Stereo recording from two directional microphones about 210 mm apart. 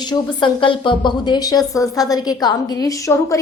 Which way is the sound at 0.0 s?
20° left (ahead or behind).